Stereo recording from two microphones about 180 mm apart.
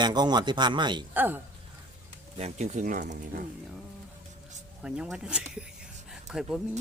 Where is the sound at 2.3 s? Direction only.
35° right (ahead or behind).